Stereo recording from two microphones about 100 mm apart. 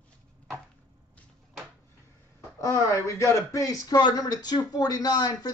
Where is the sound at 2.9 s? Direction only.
30° left (ahead or behind).